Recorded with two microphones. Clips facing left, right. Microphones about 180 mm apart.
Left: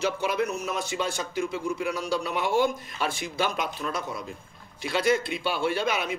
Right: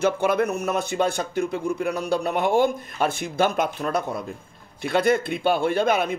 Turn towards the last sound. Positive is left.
turn(degrees=-55)  # may be behind; listen again after turning